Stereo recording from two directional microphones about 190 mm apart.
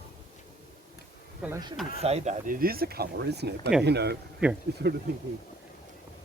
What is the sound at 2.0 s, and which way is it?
A man's voice, 35° right (ahead or behind).